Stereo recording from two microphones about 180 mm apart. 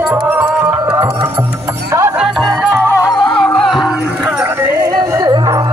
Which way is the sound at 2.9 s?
20° left (ahead or behind).